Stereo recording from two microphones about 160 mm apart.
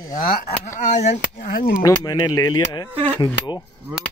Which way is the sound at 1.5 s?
65° left (ahead or behind).